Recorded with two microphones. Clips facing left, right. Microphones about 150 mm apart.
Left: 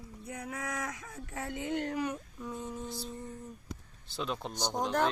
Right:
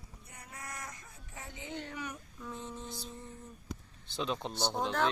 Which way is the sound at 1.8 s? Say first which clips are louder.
Left 8 dB; 35° left (ahead or behind).